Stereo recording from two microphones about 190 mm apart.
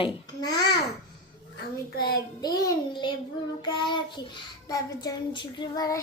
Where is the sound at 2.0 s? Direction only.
55° left (ahead or behind).